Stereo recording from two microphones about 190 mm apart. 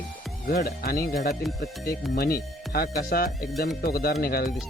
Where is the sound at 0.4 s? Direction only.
50° left (ahead or behind).